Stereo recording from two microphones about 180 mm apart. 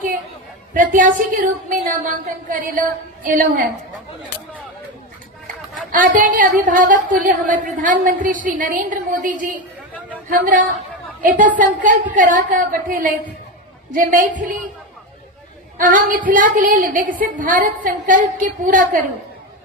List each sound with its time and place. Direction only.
0.7 s speech: 50° right (ahead or behind)
5.9 s speech: 45° right (ahead or behind)
15.8 s speech: 50° right (ahead or behind)